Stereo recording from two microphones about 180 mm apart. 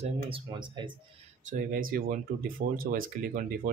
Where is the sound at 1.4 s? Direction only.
50° right (ahead or behind).